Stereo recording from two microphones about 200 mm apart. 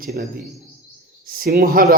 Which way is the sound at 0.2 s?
45° right (ahead or behind).